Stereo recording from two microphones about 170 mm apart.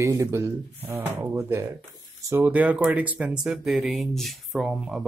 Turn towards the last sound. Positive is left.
turn(degrees=-5)  # may be behind; listen again after turning